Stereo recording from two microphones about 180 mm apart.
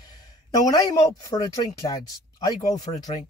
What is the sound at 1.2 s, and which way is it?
Speech, 20° left (ahead or behind).